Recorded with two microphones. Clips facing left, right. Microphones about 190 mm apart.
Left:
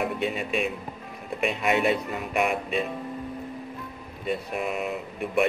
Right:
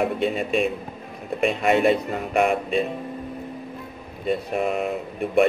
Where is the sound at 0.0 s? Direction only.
35° right (ahead or behind).